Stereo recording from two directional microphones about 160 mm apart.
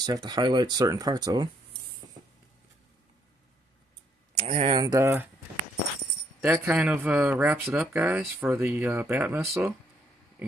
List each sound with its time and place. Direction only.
0.0 s speech: 25° right (ahead or behind)
4.4 s speech: 40° right (ahead or behind)
4.8 s speech: 20° right (ahead or behind)
6.4 s speech: 15° right (ahead or behind)